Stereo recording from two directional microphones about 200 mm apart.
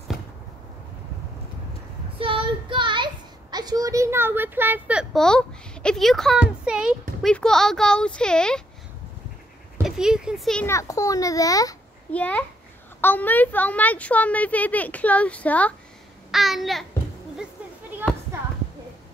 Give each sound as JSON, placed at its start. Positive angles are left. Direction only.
{"t": 2.1, "sound": "child singing", "side_deg": -25}
{"t": 3.5, "sound": "a child's voice", "side_deg": -20}
{"t": 9.8, "sound": "a child's voice", "side_deg": -5}
{"t": 10.7, "sound": "a woman's voice", "side_deg": 15}
{"t": 12.1, "sound": "a woman's voice", "side_deg": 5}
{"t": 16.3, "sound": "babbling", "side_deg": 0}
{"t": 18.0, "sound": "a sound", "side_deg": -10}